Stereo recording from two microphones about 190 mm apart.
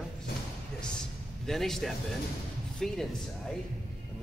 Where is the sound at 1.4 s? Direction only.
Centre (ahead or behind).